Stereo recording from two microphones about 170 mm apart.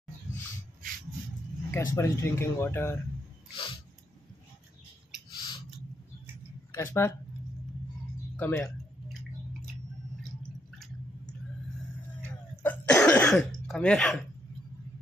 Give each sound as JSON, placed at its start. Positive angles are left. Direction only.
{"t": 1.7, "sound": "speech", "side_deg": 15}
{"t": 3.5, "sound": "a sound", "side_deg": 30}
{"t": 5.3, "sound": "scissors", "side_deg": 25}
{"t": 6.7, "sound": "speech", "side_deg": 15}
{"t": 8.4, "sound": "speech", "side_deg": 15}
{"t": 12.2, "sound": "cough", "side_deg": 10}